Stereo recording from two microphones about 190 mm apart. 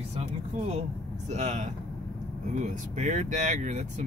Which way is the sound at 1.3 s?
40° right (ahead or behind).